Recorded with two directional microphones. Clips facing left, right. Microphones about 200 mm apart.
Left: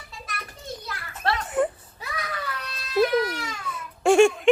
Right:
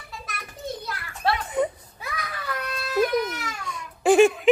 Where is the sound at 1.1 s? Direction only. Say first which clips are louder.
Even; centre (ahead or behind).